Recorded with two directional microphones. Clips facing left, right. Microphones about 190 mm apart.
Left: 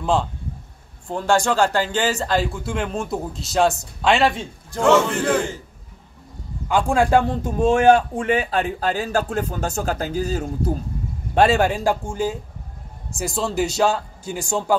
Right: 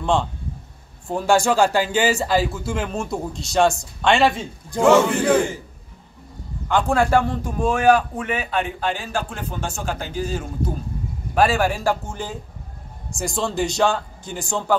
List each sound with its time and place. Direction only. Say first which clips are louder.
0.0 s a man's voice: even; 5° left (ahead or behind)
1.0 s a man's voice: right 1 dB; 10° right (ahead or behind)
6.7 s speech: left 1 dB; 10° left (ahead or behind); by 10.5 s 40° left (ahead or behind)
11.3 s a man's voice: left 2 dB; 25° left (ahead or behind)